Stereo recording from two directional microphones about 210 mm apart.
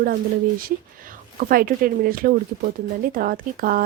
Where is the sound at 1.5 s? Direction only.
40° right (ahead or behind).